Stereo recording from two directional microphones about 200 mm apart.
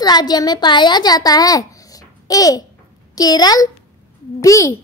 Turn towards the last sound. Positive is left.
turn(degrees=15)  # may be behind; listen again after turning